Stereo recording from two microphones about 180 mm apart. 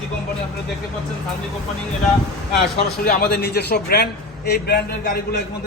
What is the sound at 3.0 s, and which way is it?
A man's voice, 55° left (ahead or behind).